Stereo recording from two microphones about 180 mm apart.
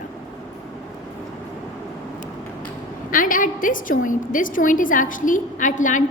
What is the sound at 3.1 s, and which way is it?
A woman's voice, 50° left (ahead or behind).